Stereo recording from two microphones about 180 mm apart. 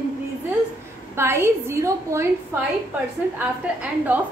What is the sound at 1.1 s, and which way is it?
A woman's voice, 15° right (ahead or behind).